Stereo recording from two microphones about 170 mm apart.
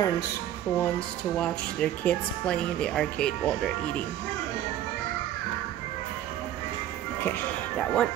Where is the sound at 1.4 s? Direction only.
5° left (ahead or behind).